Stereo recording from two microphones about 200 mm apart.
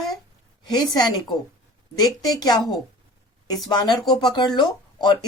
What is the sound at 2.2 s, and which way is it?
Speech, 20° left (ahead or behind).